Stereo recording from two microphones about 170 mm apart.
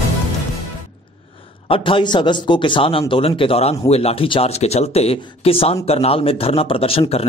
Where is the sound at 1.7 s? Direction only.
30° left (ahead or behind).